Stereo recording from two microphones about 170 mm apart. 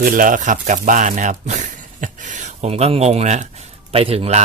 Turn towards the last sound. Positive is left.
turn(degrees=-35)  # may be behind; listen again after turning